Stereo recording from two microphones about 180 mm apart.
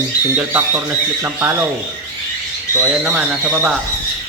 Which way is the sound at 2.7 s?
10° right (ahead or behind).